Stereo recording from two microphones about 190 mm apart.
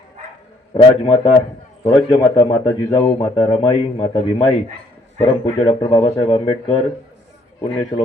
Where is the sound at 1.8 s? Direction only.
25° left (ahead or behind).